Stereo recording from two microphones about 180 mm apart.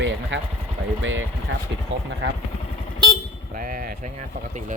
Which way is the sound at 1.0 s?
90° right.